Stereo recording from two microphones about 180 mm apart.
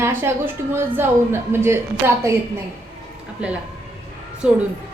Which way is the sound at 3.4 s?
5° right (ahead or behind).